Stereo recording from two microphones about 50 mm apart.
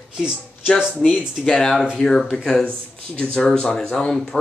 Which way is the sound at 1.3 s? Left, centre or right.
Centre.